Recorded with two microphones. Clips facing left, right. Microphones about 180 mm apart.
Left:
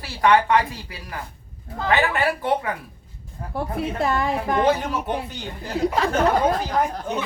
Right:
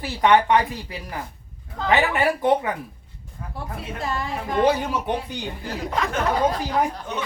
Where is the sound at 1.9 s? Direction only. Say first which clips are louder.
Right 1 dB; 20° right (ahead or behind).